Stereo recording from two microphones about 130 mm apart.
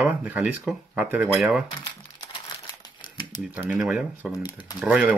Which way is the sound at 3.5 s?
10° right (ahead or behind).